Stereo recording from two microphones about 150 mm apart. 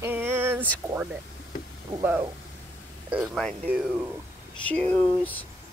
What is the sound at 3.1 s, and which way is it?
Speech, centre (ahead or behind).